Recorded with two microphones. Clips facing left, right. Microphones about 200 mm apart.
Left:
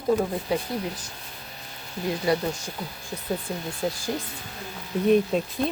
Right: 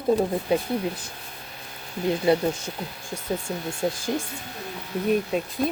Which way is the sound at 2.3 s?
25° right (ahead or behind).